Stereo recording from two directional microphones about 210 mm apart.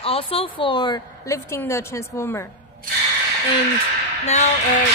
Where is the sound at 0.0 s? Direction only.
25° left (ahead or behind).